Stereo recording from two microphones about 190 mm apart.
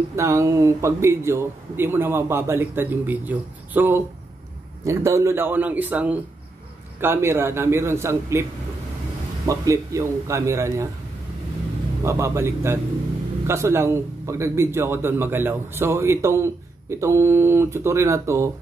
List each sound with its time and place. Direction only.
0.1 s a man's voice: 15° right (ahead or behind)
9.5 s a man's voice: 15° right (ahead or behind)
12.0 s a man's voice: 15° right (ahead or behind)